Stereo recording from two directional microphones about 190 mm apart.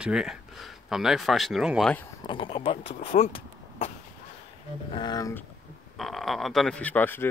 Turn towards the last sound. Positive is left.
turn(degrees=10)  # may be behind; listen again after turning